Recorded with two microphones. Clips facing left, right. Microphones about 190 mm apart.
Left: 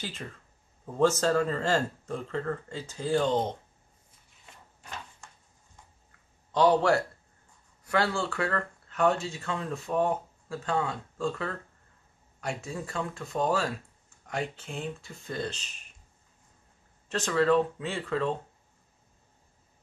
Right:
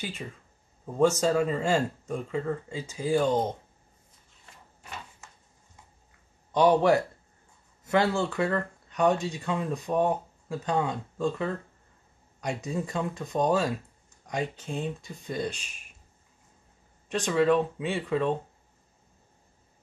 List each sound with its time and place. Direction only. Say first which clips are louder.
0.0 s speech: right 2 dB; 10° right (ahead or behind)
6.5 s speech: right 2 dB; 15° right (ahead or behind)
12.6 s speech: right 4 dB; 20° right (ahead or behind)
17.1 s speech: right 1 dB; 15° right (ahead or behind)